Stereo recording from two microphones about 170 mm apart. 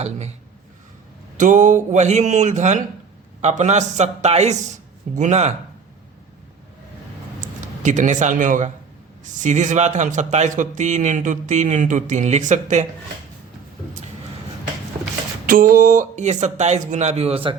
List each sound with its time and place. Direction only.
1.4 s a man's voice: 50° right (ahead or behind)
7.4 s a man's voice: 50° right (ahead or behind)
15.4 s a man's voice: 55° right (ahead or behind); by 17.5 s 35° right (ahead or behind)